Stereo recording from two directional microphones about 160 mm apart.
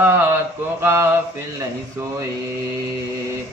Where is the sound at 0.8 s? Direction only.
15° right (ahead or behind).